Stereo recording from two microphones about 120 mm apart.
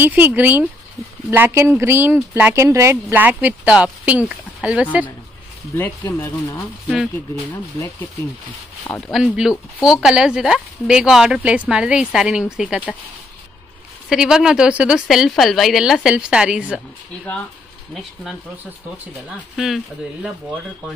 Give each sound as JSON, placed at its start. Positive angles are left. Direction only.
{"t": 0.0, "sound": "speech", "side_deg": -15}
{"t": 5.8, "sound": "speech", "side_deg": 25}
{"t": 9.1, "sound": "speech", "side_deg": -5}
{"t": 14.0, "sound": "speech", "side_deg": -5}
{"t": 19.2, "sound": "speech", "side_deg": 0}